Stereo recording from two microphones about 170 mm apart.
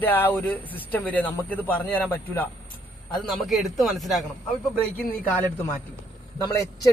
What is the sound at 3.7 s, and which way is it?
Speech, centre (ahead or behind).